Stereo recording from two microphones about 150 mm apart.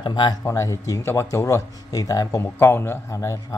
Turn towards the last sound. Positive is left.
turn(degrees=20)  # may be behind; listen again after turning